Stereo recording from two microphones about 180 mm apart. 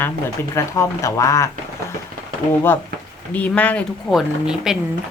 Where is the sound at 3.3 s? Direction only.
10° left (ahead or behind).